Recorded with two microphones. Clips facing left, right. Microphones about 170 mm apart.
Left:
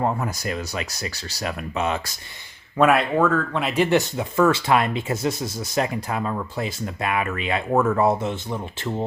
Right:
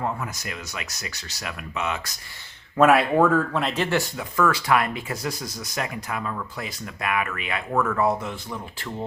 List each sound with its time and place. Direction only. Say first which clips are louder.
0.0 s speech: left 5 dB; 35° left (ahead or behind)
2.7 s speech: right 1 dB; centre (ahead or behind)
3.6 s speech: left 4 dB; 5° left (ahead or behind)
3.8 s speech: left 5 dB; 25° left (ahead or behind)